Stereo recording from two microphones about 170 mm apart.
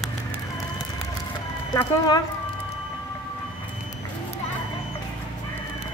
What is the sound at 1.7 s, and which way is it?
Speech, 25° left (ahead or behind).